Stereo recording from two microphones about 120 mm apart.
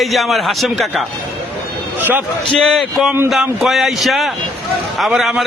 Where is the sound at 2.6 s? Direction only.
Centre (ahead or behind).